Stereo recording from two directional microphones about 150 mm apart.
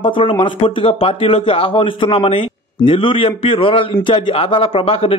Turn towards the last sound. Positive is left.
turn(degrees=40)  # may be behind; listen again after turning